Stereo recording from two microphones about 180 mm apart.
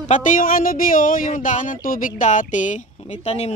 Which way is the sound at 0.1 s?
45° left (ahead or behind).